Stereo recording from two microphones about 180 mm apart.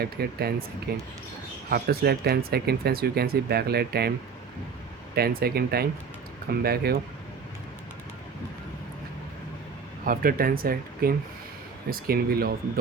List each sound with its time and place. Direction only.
0.0 s speech: 60° right (ahead or behind)
5.1 s speech: 60° right (ahead or behind)
10.1 s speech: 55° right (ahead or behind)